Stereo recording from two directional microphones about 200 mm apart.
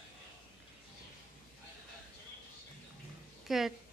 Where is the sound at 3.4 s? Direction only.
Centre (ahead or behind).